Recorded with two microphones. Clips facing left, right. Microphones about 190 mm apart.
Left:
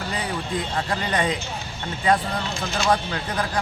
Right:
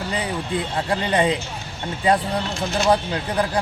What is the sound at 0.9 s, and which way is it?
Speech, 30° right (ahead or behind).